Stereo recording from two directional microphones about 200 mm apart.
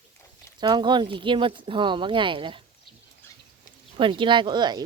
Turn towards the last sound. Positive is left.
turn(degrees=-20)  # may be behind; listen again after turning